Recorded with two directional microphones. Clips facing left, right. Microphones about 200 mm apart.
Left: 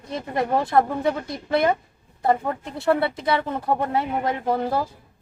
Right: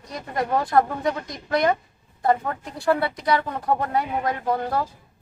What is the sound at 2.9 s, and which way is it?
Speech, 25° left (ahead or behind).